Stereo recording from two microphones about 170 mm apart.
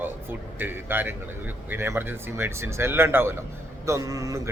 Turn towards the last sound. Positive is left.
turn(degrees=-20)  # may be behind; listen again after turning